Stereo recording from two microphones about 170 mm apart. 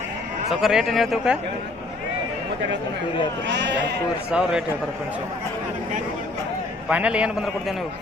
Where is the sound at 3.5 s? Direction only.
90° right.